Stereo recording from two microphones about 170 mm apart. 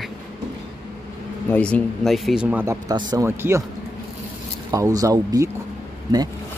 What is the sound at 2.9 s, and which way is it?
Speech, 25° right (ahead or behind).